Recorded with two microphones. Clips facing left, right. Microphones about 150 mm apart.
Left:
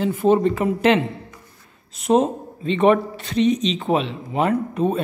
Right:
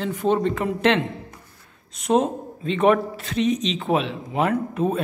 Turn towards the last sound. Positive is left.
turn(degrees=0)  # may be behind; listen again after turning